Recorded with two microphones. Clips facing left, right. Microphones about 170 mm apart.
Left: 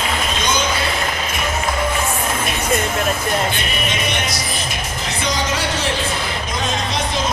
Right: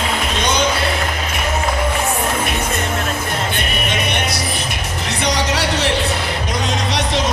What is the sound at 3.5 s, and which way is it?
Music, 60° right (ahead or behind).